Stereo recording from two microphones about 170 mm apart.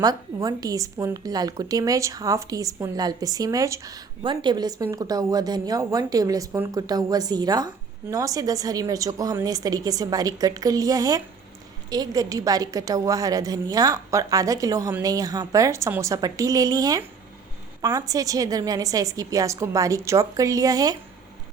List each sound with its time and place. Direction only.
0.0 s a woman's voice: 20° right (ahead or behind)